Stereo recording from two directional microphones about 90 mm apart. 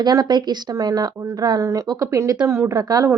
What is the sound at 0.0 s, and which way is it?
A woman's voice, 50° right (ahead or behind).